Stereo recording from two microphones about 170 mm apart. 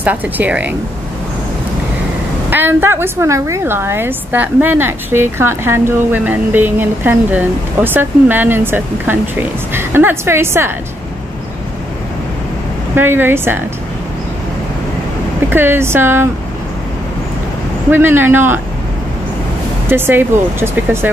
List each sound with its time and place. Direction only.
0.0 s a woman's voice: 10° right (ahead or behind)
2.5 s a woman's voice: 15° right (ahead or behind)
12.9 s a woman's voice: 10° right (ahead or behind)
15.5 s a woman's voice: 15° right (ahead or behind)
17.9 s a woman's voice: 10° right (ahead or behind)
19.9 s a woman's voice: 10° right (ahead or behind)